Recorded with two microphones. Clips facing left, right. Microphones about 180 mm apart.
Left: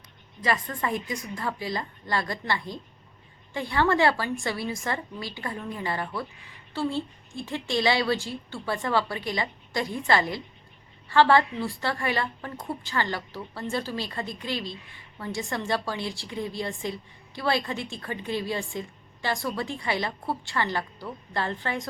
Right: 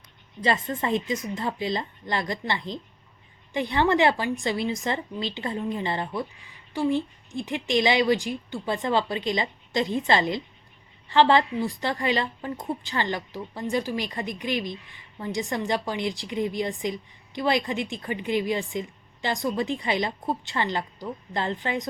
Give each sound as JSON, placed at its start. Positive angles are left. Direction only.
{"t": 0.4, "sound": "a woman's voice", "side_deg": -25}